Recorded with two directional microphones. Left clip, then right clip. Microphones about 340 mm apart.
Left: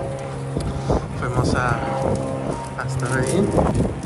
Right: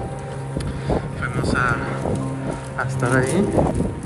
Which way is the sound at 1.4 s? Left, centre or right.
Centre.